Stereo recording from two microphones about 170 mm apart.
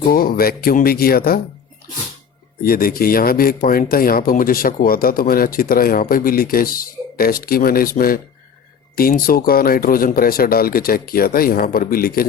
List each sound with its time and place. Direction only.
0.1 s speech: 60° left (ahead or behind)
2.6 s speech: 60° left (ahead or behind)